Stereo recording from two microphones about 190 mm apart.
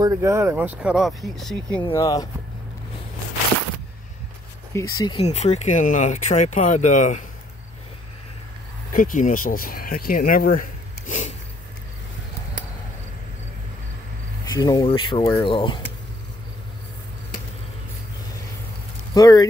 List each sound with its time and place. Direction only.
0.0 s speech: 15° right (ahead or behind); by 1.8 s centre (ahead or behind)
1.8 s speech: 20° left (ahead or behind)
4.7 s speech: 20° left (ahead or behind)
5.2 s speech: 35° left (ahead or behind)
8.9 s speech: 45° left (ahead or behind)
14.4 s speech: 20° left (ahead or behind)
19.1 s speech: 20° left (ahead or behind)